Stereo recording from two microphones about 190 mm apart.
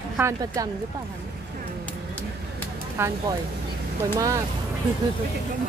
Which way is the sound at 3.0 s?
10° right (ahead or behind).